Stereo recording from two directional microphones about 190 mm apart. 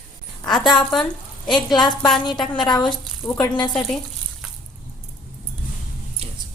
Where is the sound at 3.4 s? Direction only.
25° left (ahead or behind).